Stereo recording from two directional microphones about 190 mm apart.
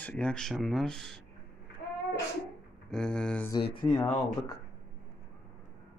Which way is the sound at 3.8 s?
30° left (ahead or behind).